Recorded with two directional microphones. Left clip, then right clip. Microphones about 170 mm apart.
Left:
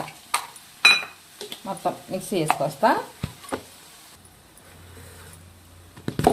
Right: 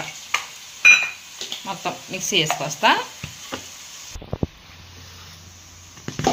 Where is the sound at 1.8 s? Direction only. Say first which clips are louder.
Even; 40° left (ahead or behind).